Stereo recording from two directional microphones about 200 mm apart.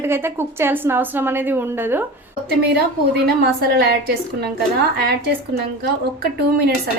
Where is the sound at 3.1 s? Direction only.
50° right (ahead or behind).